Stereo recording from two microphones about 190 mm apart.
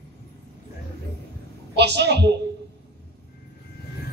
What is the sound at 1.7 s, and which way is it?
Speech, 60° right (ahead or behind).